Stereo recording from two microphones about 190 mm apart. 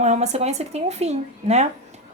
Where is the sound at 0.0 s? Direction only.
35° right (ahead or behind).